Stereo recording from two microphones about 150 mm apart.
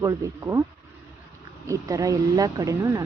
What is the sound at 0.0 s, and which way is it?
Speech, 20° right (ahead or behind).